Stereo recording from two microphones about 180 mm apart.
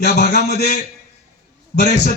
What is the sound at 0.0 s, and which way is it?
Speech, 65° left (ahead or behind).